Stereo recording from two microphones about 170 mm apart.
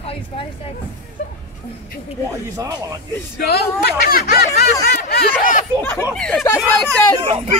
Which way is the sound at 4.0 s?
60° left (ahead or behind).